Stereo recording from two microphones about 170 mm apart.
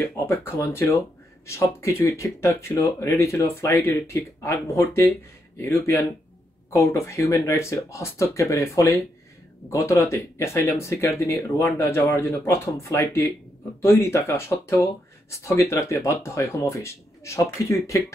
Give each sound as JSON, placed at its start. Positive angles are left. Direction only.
{"t": 0.0, "sound": "speech", "side_deg": 15}